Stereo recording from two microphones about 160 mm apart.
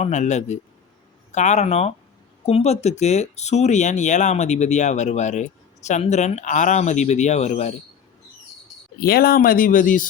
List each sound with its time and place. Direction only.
0.0 s speech: 45° left (ahead or behind)
9.0 s speech: 75° left (ahead or behind); by 10.1 s 55° left (ahead or behind)